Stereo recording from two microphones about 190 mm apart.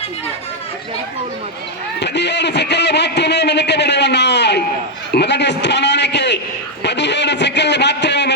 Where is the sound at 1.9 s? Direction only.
65° left (ahead or behind).